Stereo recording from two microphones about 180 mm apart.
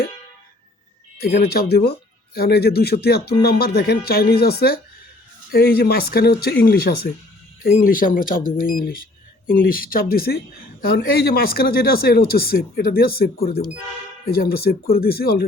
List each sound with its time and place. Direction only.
1.2 s speech: 60° left (ahead or behind)